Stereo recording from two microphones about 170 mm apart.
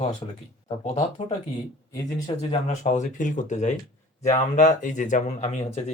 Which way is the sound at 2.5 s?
45° left (ahead or behind).